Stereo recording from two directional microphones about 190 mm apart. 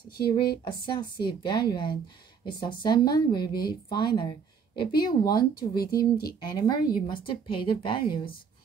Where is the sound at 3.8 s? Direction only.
25° left (ahead or behind).